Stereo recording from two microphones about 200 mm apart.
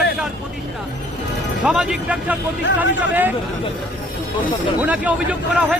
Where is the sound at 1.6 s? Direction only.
5° right (ahead or behind).